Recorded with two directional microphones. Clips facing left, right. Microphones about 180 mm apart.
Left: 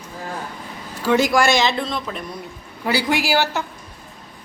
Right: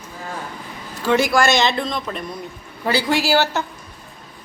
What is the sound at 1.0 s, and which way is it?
Speech, 15° left (ahead or behind).